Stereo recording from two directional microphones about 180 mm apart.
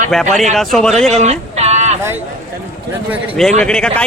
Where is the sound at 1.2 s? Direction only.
35° right (ahead or behind).